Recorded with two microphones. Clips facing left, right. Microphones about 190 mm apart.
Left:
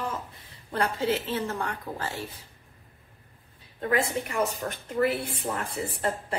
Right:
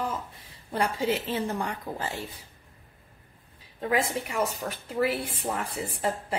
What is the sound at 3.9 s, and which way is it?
A woman's voice, 10° right (ahead or behind).